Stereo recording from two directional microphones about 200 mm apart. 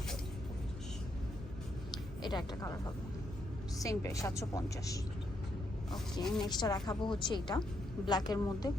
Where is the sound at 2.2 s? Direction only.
20° left (ahead or behind).